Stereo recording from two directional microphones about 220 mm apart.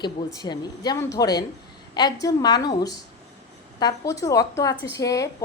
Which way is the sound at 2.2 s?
15° left (ahead or behind).